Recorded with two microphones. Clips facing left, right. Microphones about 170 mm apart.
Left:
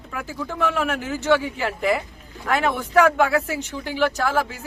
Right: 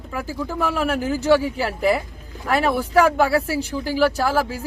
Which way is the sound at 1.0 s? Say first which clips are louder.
Right 4 dB; 35° right (ahead or behind).